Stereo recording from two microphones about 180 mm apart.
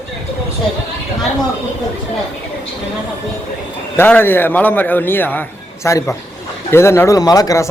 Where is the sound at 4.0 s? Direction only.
10° left (ahead or behind).